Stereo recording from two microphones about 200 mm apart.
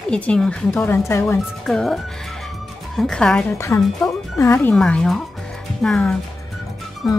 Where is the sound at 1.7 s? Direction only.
Centre (ahead or behind).